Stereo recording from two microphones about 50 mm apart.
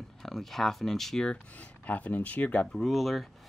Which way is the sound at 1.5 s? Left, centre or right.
Left.